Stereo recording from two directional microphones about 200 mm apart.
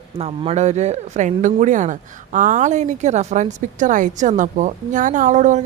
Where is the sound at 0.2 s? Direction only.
30° right (ahead or behind).